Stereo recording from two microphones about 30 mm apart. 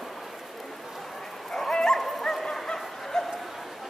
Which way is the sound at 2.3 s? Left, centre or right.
Centre.